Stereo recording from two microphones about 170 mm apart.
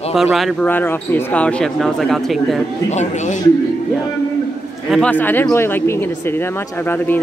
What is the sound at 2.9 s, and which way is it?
Speech, 45° left (ahead or behind).